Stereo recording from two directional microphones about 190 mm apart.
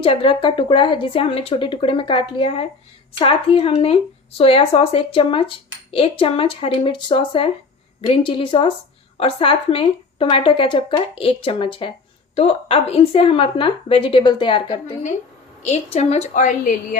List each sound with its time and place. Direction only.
0.0 s a woman's voice: 30° left (ahead or behind)